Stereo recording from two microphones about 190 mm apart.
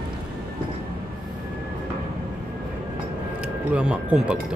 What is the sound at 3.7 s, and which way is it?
Speech, 5° right (ahead or behind).